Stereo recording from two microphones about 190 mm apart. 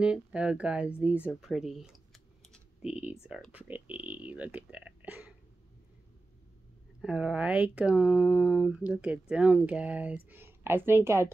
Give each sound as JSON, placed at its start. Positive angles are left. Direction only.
{"t": 0.0, "sound": "speech", "side_deg": -5}
{"t": 7.0, "sound": "speech", "side_deg": -5}